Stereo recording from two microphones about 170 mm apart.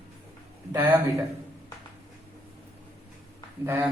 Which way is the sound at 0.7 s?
10° right (ahead or behind).